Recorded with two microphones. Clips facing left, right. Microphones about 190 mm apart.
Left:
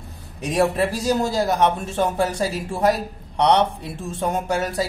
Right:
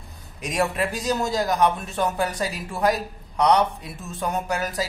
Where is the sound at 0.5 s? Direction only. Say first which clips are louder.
Left 5 dB; 30° left (ahead or behind).